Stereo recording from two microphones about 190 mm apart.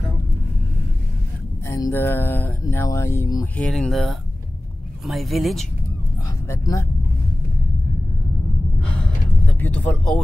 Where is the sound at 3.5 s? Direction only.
5° left (ahead or behind).